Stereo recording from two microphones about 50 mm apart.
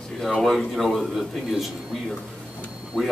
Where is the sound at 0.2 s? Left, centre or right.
Centre.